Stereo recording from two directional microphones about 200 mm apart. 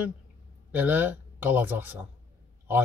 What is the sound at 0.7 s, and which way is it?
Speech, 10° right (ahead or behind).